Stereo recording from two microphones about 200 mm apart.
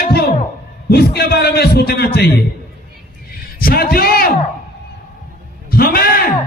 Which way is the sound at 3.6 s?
45° left (ahead or behind).